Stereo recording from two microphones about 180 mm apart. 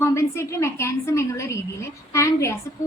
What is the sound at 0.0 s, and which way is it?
A woman's voice, 15° left (ahead or behind).